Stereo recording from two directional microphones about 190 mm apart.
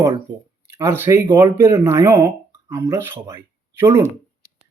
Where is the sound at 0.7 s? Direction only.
15° right (ahead or behind).